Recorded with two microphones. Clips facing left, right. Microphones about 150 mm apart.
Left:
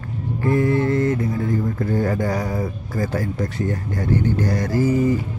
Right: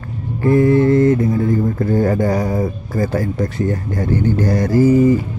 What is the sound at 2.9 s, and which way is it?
Speech, 45° right (ahead or behind).